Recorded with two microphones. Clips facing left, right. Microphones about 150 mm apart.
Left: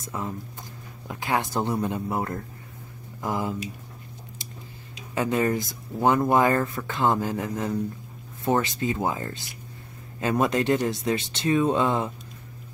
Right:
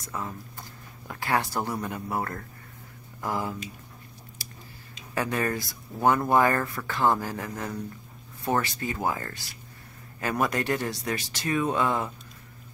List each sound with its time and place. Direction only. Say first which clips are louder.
0.0 s speech: left 3 dB; 20° left (ahead or behind)
4.4 s a sound: left 4 dB; 20° left (ahead or behind)
5.1 s speech: left 4 dB; 20° left (ahead or behind)